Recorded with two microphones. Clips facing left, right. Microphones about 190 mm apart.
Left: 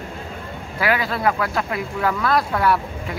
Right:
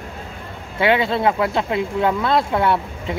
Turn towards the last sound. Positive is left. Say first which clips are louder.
# right 1 dB
turn(degrees=-25)  # may be behind; listen again after turning